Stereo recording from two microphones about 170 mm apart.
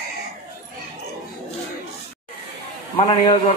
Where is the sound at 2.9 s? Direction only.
30° left (ahead or behind).